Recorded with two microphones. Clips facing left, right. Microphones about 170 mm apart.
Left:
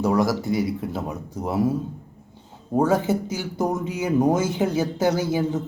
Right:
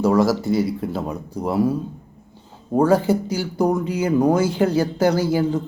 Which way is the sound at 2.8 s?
20° left (ahead or behind).